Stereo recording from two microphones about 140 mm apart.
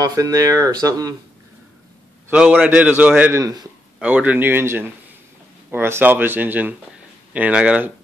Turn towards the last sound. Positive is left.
turn(degrees=-10)  # may be behind; listen again after turning